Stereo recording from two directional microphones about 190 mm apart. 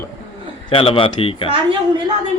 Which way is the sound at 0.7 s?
30° left (ahead or behind).